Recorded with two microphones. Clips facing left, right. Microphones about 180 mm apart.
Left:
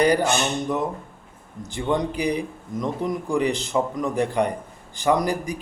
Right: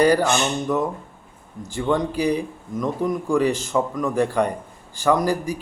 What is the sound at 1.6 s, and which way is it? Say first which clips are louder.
Speech: right 2 dB; 15° left (ahead or behind).